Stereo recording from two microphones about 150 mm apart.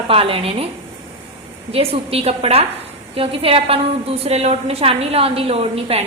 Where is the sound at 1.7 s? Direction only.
40° right (ahead or behind).